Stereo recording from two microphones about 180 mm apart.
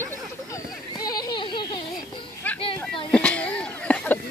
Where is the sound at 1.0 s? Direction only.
20° left (ahead or behind).